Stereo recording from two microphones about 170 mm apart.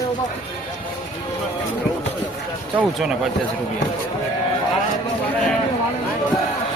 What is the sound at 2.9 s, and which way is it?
Speech, centre (ahead or behind).